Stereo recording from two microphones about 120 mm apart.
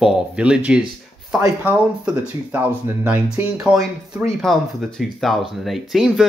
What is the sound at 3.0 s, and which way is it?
Speech, 15° right (ahead or behind).